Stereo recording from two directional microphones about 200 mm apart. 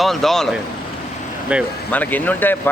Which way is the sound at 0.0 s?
Centre (ahead or behind).